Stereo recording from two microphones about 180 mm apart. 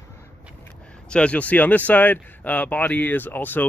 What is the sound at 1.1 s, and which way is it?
Speech, 5° left (ahead or behind).